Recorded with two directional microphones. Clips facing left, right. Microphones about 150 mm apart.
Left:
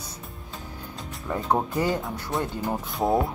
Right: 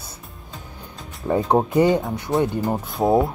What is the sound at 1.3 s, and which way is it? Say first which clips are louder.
Speech: right 7 dB; 30° right (ahead or behind).